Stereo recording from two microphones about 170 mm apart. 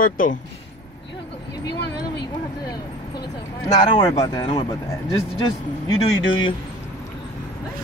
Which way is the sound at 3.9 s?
25° left (ahead or behind).